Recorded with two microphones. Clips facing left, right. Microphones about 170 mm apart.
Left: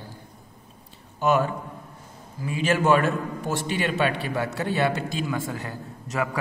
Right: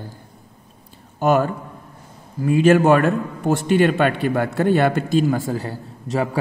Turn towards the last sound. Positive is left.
turn(degrees=-30)  # may be behind; listen again after turning